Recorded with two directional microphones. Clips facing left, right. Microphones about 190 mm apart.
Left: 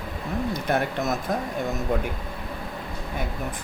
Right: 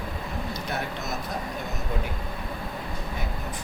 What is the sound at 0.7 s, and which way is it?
Speech, 50° left (ahead or behind).